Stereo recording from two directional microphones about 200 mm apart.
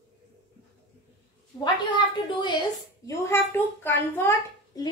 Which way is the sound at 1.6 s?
25° left (ahead or behind).